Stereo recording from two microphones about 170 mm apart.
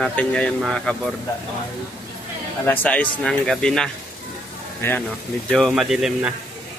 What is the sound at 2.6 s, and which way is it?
Speech, 10° left (ahead or behind).